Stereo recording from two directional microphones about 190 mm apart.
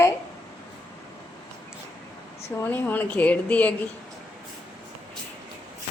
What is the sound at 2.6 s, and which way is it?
A woman's voice, 10° left (ahead or behind).